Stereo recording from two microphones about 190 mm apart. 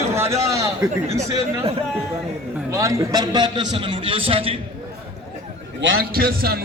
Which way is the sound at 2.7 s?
15° right (ahead or behind).